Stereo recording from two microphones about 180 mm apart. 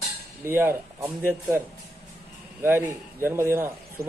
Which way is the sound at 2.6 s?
10° right (ahead or behind).